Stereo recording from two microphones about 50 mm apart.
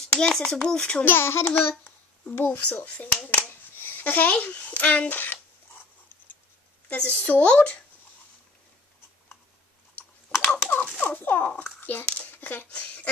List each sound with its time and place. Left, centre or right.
0.0 s a child's voice: centre
1.0 s a child's voice: left
1.4 s a child's voice: left
3.4 s a sound: left
7.1 s a woman's voice: left
10.5 s typing: left
11.0 s fowl: left
11.8 s a sound: left